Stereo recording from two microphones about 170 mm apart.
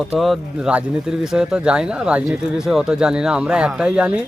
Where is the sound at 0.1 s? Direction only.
Centre (ahead or behind).